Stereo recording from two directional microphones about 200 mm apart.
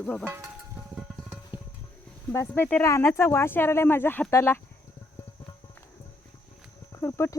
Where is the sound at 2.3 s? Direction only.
10° left (ahead or behind).